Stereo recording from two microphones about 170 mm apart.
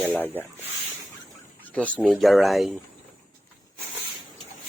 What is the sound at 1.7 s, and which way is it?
Speech, 5° left (ahead or behind).